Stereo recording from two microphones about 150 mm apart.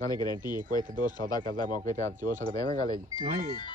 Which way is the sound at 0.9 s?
65° right (ahead or behind).